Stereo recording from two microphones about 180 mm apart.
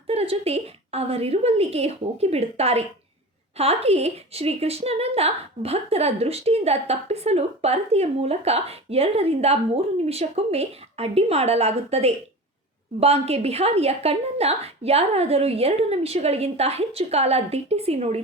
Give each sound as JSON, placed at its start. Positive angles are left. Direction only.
{"t": 0.1, "sound": "a woman's voice", "side_deg": -35}